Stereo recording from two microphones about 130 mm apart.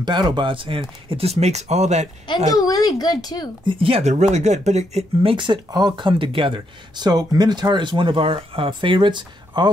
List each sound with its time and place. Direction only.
0.0 s speech: 35° right (ahead or behind); by 2.0 s 60° right (ahead or behind)
2.5 s speech: 30° left (ahead or behind)
3.6 s speech: 45° right (ahead or behind)
4.0 s speech: 60° right (ahead or behind)
5.3 s speech: 40° right (ahead or behind)